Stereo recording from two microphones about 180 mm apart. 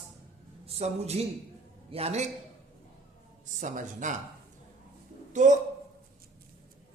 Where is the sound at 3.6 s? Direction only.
45° right (ahead or behind).